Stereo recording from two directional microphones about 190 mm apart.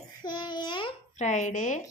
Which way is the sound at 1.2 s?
40° left (ahead or behind).